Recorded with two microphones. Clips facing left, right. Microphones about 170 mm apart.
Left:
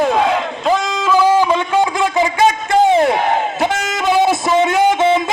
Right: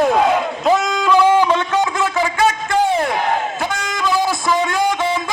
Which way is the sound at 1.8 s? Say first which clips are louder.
Left 3 dB; 20° left (ahead or behind).